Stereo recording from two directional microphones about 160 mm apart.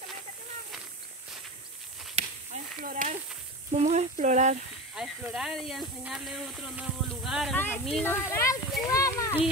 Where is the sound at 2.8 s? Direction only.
55° right (ahead or behind).